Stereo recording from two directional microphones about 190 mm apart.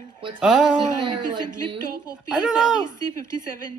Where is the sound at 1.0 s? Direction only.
25° right (ahead or behind).